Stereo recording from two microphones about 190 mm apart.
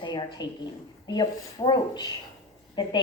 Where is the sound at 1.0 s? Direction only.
20° left (ahead or behind).